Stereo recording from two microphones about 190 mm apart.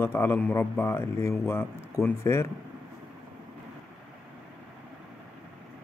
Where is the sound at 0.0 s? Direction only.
10° left (ahead or behind).